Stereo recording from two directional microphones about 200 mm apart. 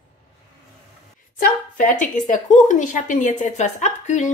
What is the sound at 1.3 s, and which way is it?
Speech, 40° left (ahead or behind).